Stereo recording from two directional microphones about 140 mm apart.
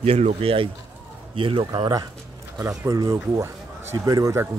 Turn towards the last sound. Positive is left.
turn(degrees=-20)  # may be behind; listen again after turning